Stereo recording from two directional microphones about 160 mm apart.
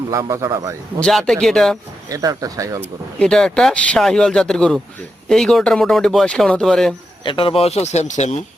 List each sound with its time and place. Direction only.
0.1 s speech: 20° right (ahead or behind)
0.9 s speech: 5° left (ahead or behind)
2.0 s speech: 20° right (ahead or behind)
2.8 s speech: 5° left (ahead or behind)
7.3 s speech: 35° left (ahead or behind)